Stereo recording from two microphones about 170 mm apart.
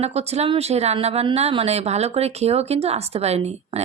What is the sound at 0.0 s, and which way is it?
Speech, 40° right (ahead or behind).